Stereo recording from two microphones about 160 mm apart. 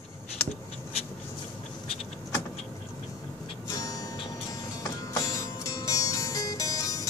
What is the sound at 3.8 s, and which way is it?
Music, 25° left (ahead or behind).